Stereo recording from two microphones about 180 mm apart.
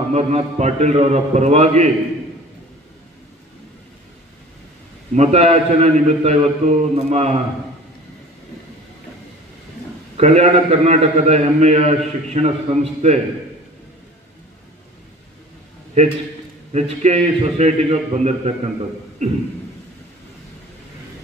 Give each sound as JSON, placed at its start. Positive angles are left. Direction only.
{"t": 0.1, "sound": "a man's voice", "side_deg": -35}
{"t": 5.1, "sound": "a man's voice", "side_deg": -35}
{"t": 10.1, "sound": "a man's voice", "side_deg": -40}
{"t": 16.0, "sound": "a man's voice", "side_deg": -35}